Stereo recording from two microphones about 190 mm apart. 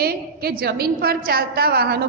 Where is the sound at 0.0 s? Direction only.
55° right (ahead or behind).